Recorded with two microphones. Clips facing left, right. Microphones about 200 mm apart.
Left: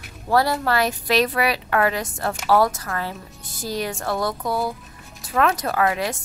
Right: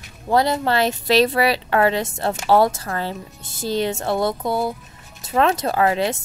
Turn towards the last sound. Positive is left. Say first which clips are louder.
# right 3 dB
turn(degrees=-30)  # may be behind; listen again after turning